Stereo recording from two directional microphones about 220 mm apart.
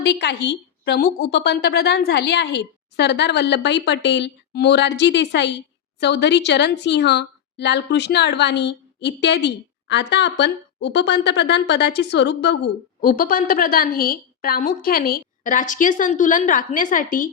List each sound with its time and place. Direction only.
0.0 s a woman's voice: 50° left (ahead or behind)